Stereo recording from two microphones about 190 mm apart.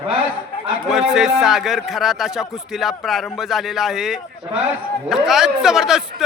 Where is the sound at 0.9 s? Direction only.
Centre (ahead or behind).